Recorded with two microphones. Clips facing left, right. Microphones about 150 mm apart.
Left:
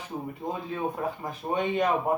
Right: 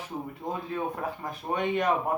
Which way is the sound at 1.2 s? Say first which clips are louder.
Even; 20° left (ahead or behind).